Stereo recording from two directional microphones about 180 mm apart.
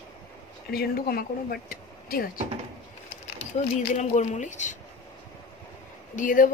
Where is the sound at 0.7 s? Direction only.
60° left (ahead or behind).